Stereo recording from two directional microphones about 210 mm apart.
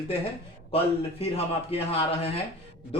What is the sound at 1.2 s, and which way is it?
Speech, 30° left (ahead or behind).